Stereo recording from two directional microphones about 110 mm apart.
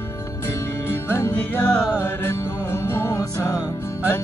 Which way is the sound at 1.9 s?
20° left (ahead or behind).